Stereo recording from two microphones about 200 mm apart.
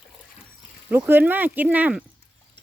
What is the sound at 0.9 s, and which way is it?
Speech, 10° right (ahead or behind).